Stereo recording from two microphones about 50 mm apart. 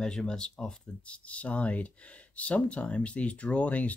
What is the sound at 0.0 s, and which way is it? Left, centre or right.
Speech, centre.